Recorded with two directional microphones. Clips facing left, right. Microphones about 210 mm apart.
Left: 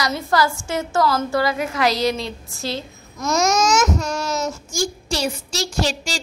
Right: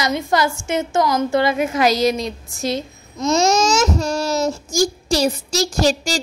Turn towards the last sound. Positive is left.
turn(degrees=-40)  # may be behind; listen again after turning